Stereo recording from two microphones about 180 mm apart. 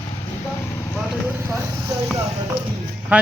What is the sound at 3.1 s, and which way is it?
Speech, 5° right (ahead or behind).